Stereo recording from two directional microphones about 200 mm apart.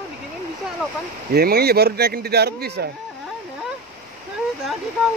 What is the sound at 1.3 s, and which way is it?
Speech, 50° right (ahead or behind).